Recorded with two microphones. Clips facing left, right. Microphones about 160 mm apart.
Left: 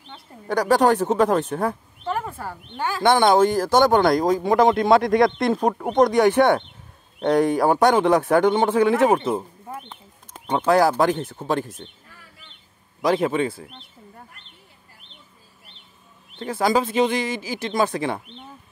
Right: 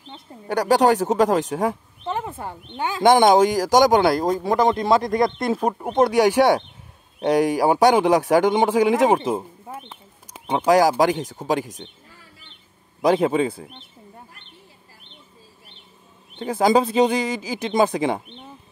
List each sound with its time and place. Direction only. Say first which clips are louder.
0.5 s speech: right 1 dB; 10° right (ahead or behind)
2.0 s speech: even; 20° right (ahead or behind)
13.2 s speech: right 2 dB; 30° right (ahead or behind)
16.3 s speech: right 3 dB; 20° right (ahead or behind)
17.7 s speech: right 3 dB; 20° right (ahead or behind)